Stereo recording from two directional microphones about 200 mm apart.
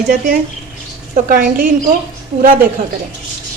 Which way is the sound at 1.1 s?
45° right (ahead or behind).